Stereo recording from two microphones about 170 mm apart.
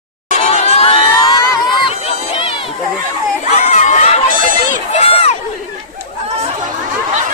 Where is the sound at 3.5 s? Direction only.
40° left (ahead or behind).